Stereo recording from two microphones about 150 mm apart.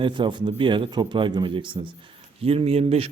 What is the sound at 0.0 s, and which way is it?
A man's voice, 30° right (ahead or behind).